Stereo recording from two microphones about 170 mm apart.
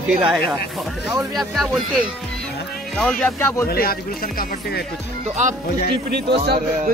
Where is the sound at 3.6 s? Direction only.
60° left (ahead or behind).